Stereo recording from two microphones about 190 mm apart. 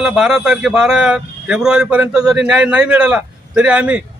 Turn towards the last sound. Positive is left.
turn(degrees=-5)  # may be behind; listen again after turning